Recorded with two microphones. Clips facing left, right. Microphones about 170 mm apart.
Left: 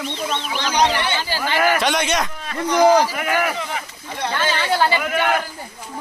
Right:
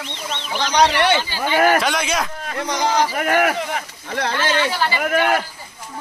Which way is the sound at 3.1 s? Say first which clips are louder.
Right 3 dB; 50° right (ahead or behind).